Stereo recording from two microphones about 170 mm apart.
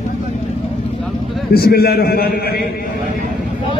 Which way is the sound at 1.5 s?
65° left (ahead or behind).